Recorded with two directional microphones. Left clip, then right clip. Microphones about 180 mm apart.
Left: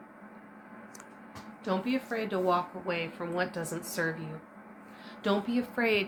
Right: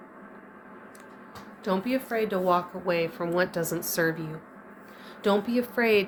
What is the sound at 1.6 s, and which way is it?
A woman's voice, 45° right (ahead or behind).